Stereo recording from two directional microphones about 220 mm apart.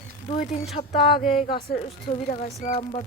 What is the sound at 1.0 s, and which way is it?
Speech, 25° left (ahead or behind).